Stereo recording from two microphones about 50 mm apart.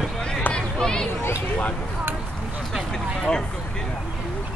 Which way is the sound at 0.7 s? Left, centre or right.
Centre.